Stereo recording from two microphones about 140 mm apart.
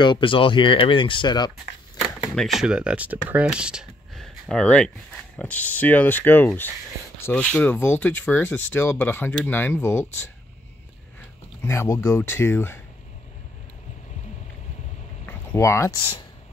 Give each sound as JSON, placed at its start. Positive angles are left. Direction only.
{"t": 0.0, "sound": "speech", "side_deg": 35}
{"t": 2.3, "sound": "speech", "side_deg": 0}
{"t": 15.2, "sound": "a sound", "side_deg": 20}